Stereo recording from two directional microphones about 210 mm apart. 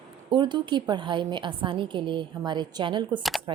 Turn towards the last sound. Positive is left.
turn(degrees=0)  # may be behind; listen again after turning